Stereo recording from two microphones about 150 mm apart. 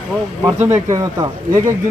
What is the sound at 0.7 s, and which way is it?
Speech, 20° right (ahead or behind).